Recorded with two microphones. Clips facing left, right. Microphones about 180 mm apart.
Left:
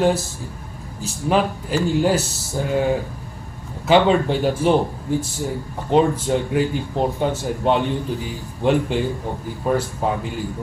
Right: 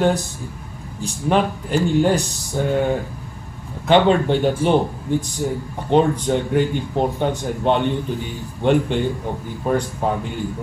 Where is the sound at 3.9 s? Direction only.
5° left (ahead or behind).